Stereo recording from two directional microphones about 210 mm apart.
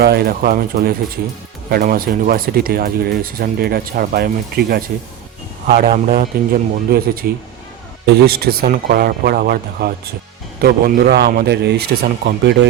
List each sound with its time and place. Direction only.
0.0 s speech: 50° right (ahead or behind)